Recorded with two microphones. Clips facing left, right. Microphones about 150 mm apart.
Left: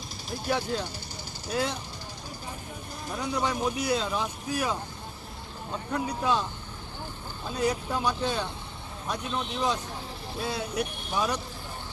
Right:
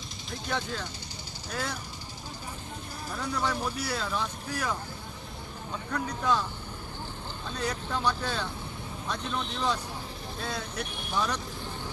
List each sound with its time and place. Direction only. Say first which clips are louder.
0.5 s speech: left 5 dB; 15° left (ahead or behind)
3.1 s speech: left 2 dB; 15° left (ahead or behind)
7.4 s speech: left 6 dB; 10° left (ahead or behind)